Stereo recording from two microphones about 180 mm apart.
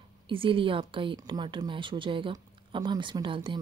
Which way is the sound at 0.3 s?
30° right (ahead or behind).